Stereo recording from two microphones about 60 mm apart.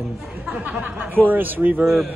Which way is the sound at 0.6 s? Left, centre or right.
Right.